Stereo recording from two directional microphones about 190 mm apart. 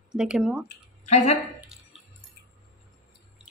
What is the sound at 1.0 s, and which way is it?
Speech, 35° left (ahead or behind).